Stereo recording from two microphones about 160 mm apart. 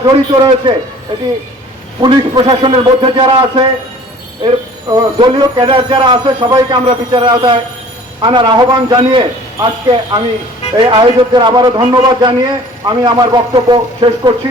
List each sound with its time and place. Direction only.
0.0 s a man's voice: 25° right (ahead or behind)
2.0 s a man's voice: 30° right (ahead or behind)
10.8 s a man's voice: 30° right (ahead or behind)